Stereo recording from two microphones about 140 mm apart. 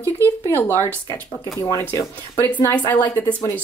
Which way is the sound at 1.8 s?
10° left (ahead or behind).